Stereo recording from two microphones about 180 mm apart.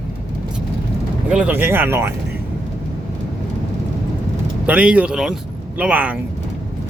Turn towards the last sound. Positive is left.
turn(degrees=-10)  # may be behind; listen again after turning